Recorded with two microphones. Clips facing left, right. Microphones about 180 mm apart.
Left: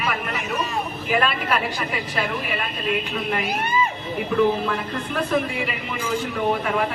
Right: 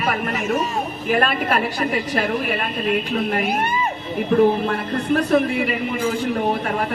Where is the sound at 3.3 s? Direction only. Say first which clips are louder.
Right 3 dB; 50° right (ahead or behind).